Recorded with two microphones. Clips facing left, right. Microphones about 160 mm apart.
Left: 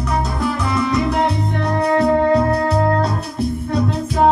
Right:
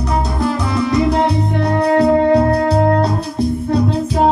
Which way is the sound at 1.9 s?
30° right (ahead or behind).